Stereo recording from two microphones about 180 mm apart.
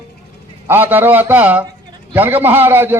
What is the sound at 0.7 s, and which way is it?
Speech, 10° right (ahead or behind).